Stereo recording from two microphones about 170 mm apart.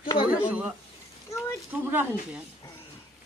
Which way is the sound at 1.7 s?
10° right (ahead or behind).